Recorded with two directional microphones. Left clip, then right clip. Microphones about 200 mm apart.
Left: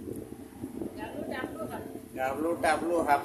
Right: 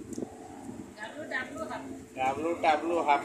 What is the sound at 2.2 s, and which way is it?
Speech, 25° left (ahead or behind).